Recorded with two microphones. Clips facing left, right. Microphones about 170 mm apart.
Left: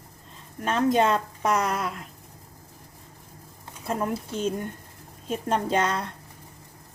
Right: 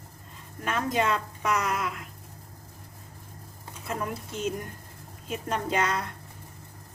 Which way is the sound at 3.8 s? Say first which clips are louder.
Left 5 dB; 35° left (ahead or behind).